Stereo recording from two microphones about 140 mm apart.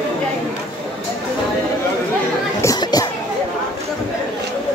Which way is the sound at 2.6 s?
25° left (ahead or behind).